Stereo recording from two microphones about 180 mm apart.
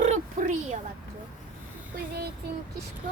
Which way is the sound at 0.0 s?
40° right (ahead or behind).